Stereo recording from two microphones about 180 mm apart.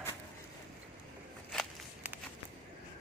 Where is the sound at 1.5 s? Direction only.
Centre (ahead or behind).